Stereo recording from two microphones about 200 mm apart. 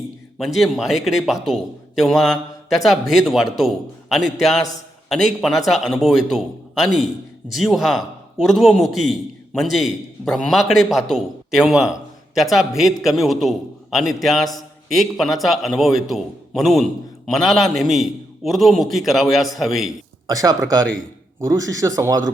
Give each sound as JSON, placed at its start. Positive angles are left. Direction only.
{"t": 0.3, "sound": "a man's voice", "side_deg": 0}
{"t": 20.2, "sound": "speech", "side_deg": -20}